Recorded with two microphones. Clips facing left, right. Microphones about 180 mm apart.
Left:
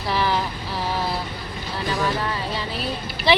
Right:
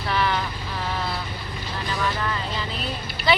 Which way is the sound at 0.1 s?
25° left (ahead or behind).